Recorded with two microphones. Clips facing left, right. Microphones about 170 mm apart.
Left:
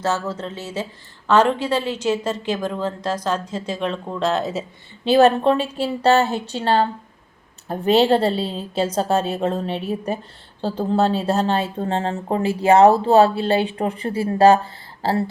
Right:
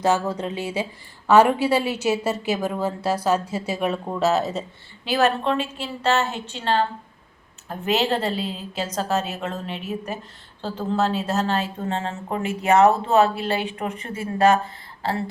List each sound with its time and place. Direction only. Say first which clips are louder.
0.0 s a woman's voice: right 2 dB; 15° right (ahead or behind)
5.0 s speech: left 7 dB; 30° left (ahead or behind)